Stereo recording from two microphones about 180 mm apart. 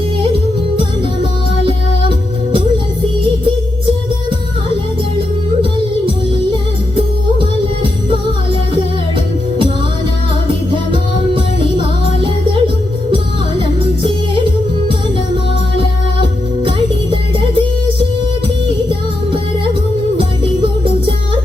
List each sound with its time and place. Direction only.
1.6 s music: 30° right (ahead or behind)
12.2 s music: 30° right (ahead or behind)
16.6 s music: 30° right (ahead or behind)
18.9 s music: 30° right (ahead or behind)